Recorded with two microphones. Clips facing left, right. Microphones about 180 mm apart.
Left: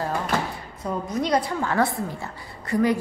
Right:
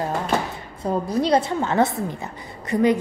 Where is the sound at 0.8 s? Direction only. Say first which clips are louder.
Right 4 dB; 30° right (ahead or behind).